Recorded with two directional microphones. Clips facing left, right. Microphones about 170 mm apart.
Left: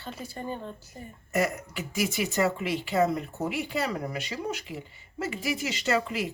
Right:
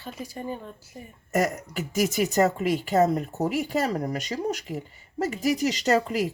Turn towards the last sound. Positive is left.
turn(degrees=-40)  # may be behind; listen again after turning